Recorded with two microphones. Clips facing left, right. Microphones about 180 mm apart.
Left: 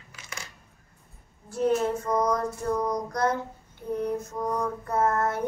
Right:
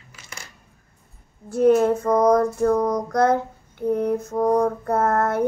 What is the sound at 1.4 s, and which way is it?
Child singing, 55° right (ahead or behind).